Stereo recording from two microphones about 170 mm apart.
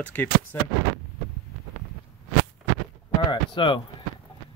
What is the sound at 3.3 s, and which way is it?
Speech, 30° left (ahead or behind).